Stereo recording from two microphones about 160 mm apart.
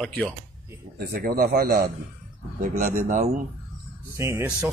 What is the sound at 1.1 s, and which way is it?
Speech, 65° right (ahead or behind).